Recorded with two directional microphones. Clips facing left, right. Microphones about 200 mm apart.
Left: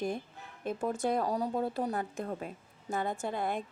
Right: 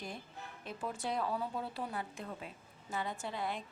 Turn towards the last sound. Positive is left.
turn(degrees=50)  # may be behind; listen again after turning